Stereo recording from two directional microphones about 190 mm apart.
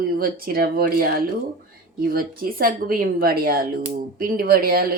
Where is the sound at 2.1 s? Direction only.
50° right (ahead or behind).